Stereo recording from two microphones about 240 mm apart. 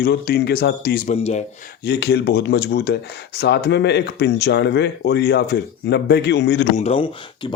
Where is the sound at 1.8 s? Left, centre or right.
Left.